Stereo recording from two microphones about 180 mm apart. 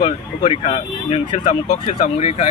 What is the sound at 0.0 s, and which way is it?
Speech, 30° left (ahead or behind).